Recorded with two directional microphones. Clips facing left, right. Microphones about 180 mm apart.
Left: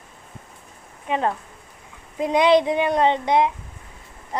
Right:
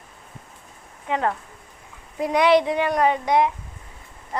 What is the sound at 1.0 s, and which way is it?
Speech, 20° left (ahead or behind).